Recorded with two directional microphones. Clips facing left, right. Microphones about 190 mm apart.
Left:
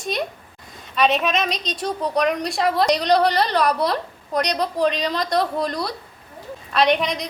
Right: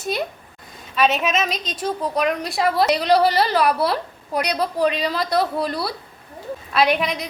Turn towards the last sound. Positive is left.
turn(degrees=-5)  # may be behind; listen again after turning